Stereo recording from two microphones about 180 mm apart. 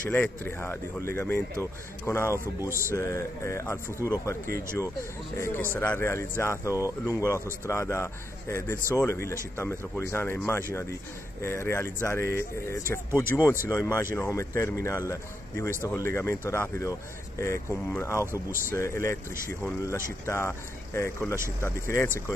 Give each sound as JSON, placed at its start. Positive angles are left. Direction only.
{"t": 0.1, "sound": "speech", "side_deg": 10}
{"t": 5.4, "sound": "speech", "side_deg": 10}